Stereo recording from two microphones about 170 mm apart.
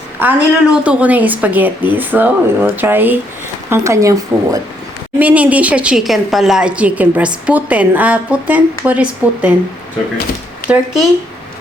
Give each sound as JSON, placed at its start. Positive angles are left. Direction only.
{"t": 0.2, "sound": "a woman's voice", "side_deg": -10}
{"t": 5.2, "sound": "a woman's voice", "side_deg": -10}
{"t": 10.7, "sound": "a woman's voice", "side_deg": -5}